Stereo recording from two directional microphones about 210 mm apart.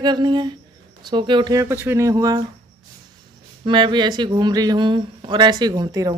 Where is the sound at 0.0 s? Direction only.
20° right (ahead or behind).